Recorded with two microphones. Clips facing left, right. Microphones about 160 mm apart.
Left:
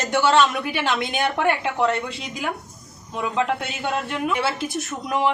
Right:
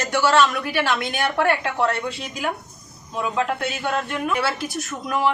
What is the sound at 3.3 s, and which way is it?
A man's voice, 20° left (ahead or behind).